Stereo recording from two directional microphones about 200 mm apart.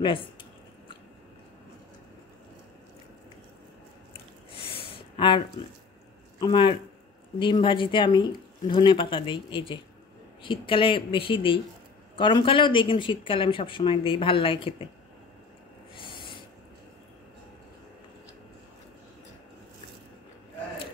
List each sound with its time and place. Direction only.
0.0 s speech: 25° left (ahead or behind)
4.6 s a sound: 25° left (ahead or behind)
6.4 s speech: 25° left (ahead or behind)
16.0 s owl: 25° left (ahead or behind)